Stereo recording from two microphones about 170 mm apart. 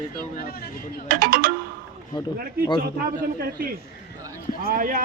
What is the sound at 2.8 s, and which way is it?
A man's voice, 60° right (ahead or behind).